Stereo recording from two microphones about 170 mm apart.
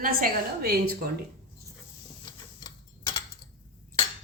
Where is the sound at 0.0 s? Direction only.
60° right (ahead or behind).